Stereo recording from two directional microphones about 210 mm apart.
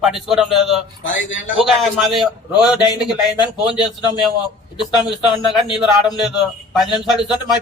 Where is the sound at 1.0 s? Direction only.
65° left (ahead or behind).